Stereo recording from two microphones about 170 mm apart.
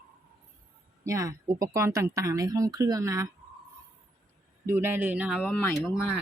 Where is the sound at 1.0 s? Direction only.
20° right (ahead or behind).